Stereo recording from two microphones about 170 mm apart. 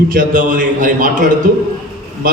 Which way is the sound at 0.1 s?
55° right (ahead or behind).